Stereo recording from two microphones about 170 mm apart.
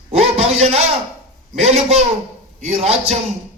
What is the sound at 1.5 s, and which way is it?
A man's voice, 40° right (ahead or behind).